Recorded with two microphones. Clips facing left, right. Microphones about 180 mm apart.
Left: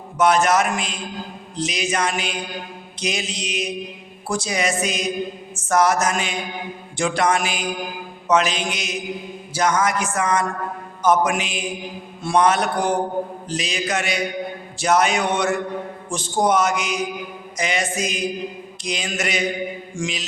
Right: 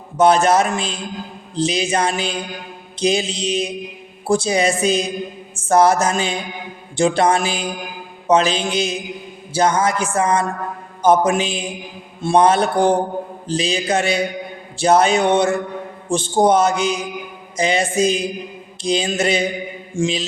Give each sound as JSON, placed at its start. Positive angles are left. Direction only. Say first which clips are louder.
{"t": 0.2, "sound": "music", "louder": "right 3 dB", "side_deg": -30}